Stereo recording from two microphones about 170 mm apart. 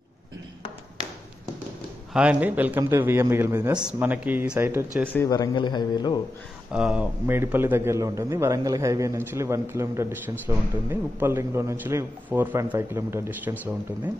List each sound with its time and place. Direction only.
2.1 s a man's voice: 10° right (ahead or behind)
5.1 s speech: 20° left (ahead or behind)
6.7 s a man's voice: 5° right (ahead or behind)